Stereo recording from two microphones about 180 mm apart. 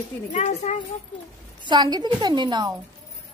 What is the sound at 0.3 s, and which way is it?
Speech, 40° left (ahead or behind).